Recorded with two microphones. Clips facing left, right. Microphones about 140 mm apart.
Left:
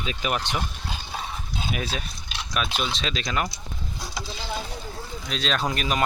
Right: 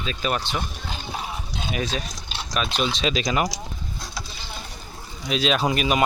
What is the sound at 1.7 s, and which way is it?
Speech, 10° left (ahead or behind).